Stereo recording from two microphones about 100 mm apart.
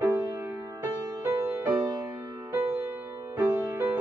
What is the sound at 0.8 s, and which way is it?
Music, 30° right (ahead or behind).